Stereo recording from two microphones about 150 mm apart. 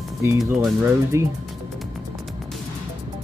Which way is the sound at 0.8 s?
20° right (ahead or behind).